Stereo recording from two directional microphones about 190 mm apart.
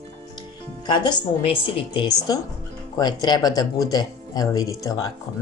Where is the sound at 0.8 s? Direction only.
25° left (ahead or behind).